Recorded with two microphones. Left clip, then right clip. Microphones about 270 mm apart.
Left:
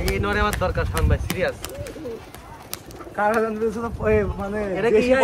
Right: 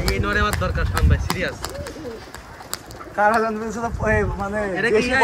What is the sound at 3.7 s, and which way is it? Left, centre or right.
Speech, right.